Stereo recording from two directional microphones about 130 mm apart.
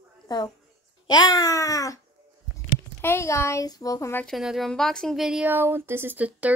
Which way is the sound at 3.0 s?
20° left (ahead or behind).